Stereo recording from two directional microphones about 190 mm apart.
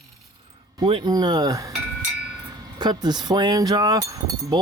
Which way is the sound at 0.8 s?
25° right (ahead or behind).